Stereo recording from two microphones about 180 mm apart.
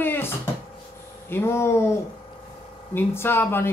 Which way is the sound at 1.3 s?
15° left (ahead or behind).